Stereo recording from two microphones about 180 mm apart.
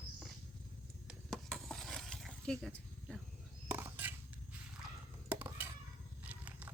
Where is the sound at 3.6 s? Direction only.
10° right (ahead or behind).